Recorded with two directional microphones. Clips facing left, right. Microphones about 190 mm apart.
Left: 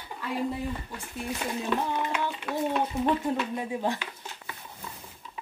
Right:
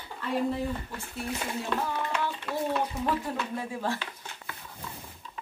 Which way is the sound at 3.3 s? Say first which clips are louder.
Left 4 dB; 20° left (ahead or behind).